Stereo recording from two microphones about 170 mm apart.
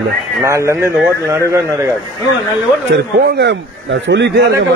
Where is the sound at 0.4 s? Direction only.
15° right (ahead or behind).